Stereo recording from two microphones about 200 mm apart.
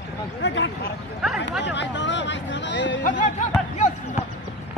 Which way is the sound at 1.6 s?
65° left (ahead or behind).